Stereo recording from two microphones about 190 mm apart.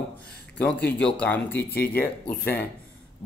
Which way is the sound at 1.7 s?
55° left (ahead or behind).